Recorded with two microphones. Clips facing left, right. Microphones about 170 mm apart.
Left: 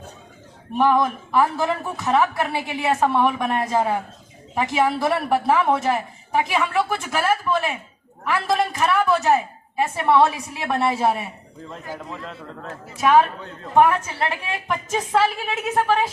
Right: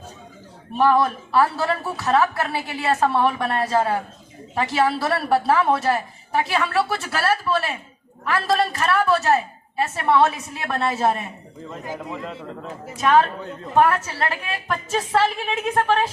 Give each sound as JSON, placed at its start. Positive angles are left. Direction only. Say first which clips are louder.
{"t": 0.8, "sound": "a woman's voice", "louder": "right 1 dB", "side_deg": 15}
{"t": 11.9, "sound": "speech", "louder": "right 3 dB", "side_deg": -15}
{"t": 13.0, "sound": "a woman's voice", "louder": "left 1 dB", "side_deg": 10}